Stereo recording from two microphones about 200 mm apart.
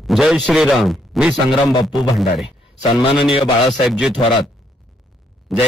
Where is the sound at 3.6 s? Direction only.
Centre (ahead or behind).